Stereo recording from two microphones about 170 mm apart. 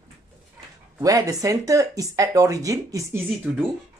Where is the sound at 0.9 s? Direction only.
20° right (ahead or behind).